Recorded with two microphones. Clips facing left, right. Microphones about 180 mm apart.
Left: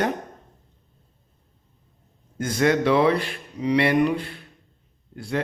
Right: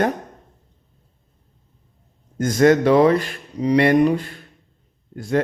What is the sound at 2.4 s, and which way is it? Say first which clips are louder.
A man's voice: right 6 dB; 45° right (ahead or behind).